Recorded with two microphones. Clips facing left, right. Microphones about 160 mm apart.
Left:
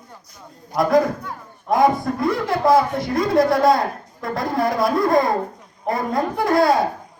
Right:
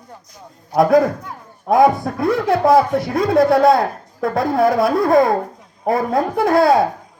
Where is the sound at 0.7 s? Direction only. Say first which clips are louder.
Right 4 dB; 60° right (ahead or behind).